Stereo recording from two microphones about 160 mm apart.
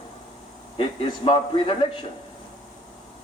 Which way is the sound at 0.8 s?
30° left (ahead or behind).